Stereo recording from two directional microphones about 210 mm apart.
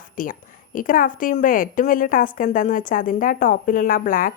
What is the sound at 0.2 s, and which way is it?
A woman's voice, 40° left (ahead or behind).